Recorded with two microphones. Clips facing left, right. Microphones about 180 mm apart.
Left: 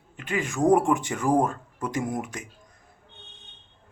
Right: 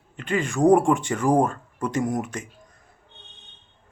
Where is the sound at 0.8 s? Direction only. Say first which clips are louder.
Right 3 dB; 20° left (ahead or behind).